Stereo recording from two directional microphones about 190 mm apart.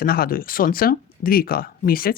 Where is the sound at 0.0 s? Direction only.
50° left (ahead or behind).